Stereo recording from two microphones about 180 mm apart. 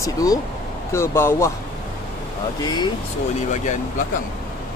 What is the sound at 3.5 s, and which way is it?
Speech, 45° left (ahead or behind).